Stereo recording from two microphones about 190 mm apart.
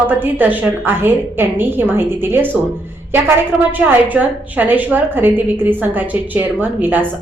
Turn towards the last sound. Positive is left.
turn(degrees=-10)  # may be behind; listen again after turning